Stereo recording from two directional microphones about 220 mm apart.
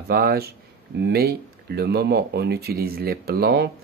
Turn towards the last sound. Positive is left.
turn(degrees=-45)  # may be behind; listen again after turning